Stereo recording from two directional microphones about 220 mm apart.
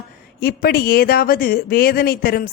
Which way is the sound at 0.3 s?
45° left (ahead or behind).